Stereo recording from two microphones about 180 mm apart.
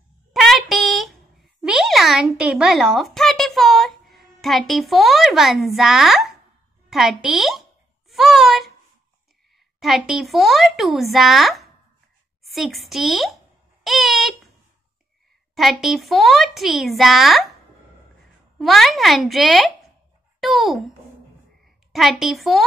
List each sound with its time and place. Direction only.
0.3 s a sound: centre (ahead or behind)
6.9 s speech: centre (ahead or behind)
9.8 s speech: centre (ahead or behind)
15.5 s speech: centre (ahead or behind)
18.6 s a child's voice: centre (ahead or behind)
21.9 s speech: centre (ahead or behind)